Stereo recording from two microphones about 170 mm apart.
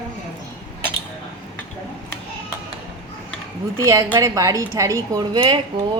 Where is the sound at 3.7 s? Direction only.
20° right (ahead or behind).